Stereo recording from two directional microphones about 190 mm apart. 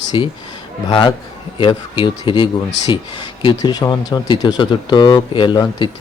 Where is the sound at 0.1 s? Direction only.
25° left (ahead or behind).